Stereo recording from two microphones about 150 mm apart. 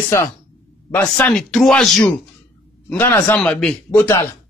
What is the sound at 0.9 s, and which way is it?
Speech, 10° left (ahead or behind).